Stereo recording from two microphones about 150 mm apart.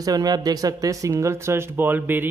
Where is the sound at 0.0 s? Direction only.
25° right (ahead or behind).